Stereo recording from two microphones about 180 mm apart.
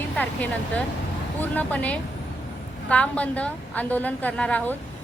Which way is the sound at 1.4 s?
10° left (ahead or behind).